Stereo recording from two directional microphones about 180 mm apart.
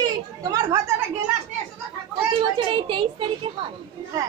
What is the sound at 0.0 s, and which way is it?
Chatter, 20° right (ahead or behind).